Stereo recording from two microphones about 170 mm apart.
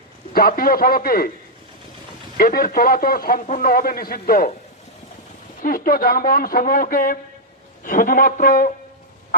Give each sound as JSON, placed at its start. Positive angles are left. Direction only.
{"t": 0.3, "sound": "speech", "side_deg": 60}
{"t": 2.4, "sound": "speech", "side_deg": 60}
{"t": 5.6, "sound": "a man's voice", "side_deg": 60}